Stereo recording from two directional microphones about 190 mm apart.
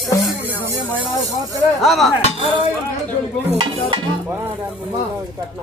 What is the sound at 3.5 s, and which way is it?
Stir, 25° right (ahead or behind).